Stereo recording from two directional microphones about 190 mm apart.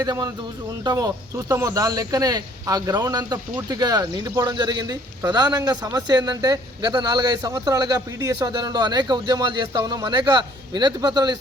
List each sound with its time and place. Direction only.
0.0 s speech: 20° right (ahead or behind)